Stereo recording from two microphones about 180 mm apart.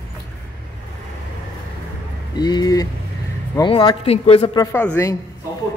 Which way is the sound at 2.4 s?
20° left (ahead or behind).